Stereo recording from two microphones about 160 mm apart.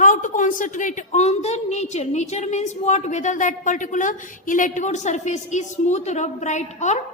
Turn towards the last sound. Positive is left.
turn(degrees=45)  # may be behind; listen again after turning